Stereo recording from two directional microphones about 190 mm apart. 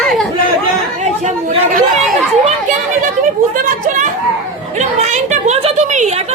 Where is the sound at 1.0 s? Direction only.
40° right (ahead or behind).